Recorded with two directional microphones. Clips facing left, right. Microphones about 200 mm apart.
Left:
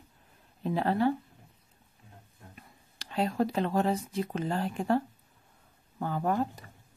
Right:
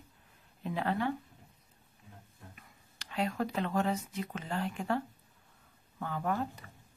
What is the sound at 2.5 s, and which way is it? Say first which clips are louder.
Speech: left 5 dB; 35° left (ahead or behind).